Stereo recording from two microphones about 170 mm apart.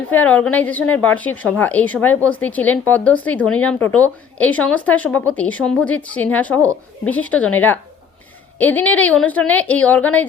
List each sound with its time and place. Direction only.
0.1 s a woman's voice: 10° left (ahead or behind)